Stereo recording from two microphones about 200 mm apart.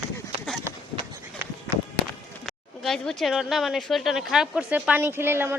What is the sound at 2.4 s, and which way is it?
Speech, centre (ahead or behind).